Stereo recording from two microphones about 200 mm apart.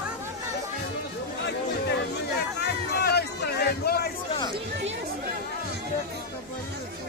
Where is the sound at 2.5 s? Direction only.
55° left (ahead or behind).